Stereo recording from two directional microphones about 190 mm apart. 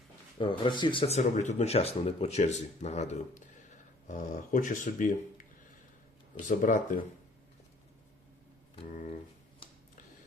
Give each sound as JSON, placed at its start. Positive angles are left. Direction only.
{"t": 0.3, "sound": "speech", "side_deg": 25}
{"t": 6.4, "sound": "speech", "side_deg": 45}
{"t": 8.9, "sound": "speech", "side_deg": 40}